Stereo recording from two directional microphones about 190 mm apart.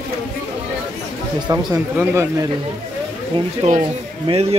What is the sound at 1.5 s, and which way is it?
Speech, 20° right (ahead or behind).